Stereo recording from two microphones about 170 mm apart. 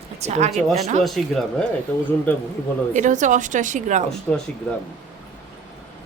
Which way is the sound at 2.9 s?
45° right (ahead or behind).